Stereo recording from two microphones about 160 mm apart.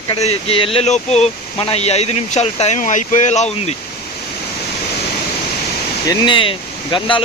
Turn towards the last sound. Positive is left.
turn(degrees=30)  # may be behind; listen again after turning